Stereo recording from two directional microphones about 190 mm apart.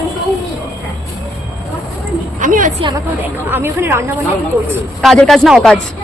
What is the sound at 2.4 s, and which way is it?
Speech, 45° right (ahead or behind).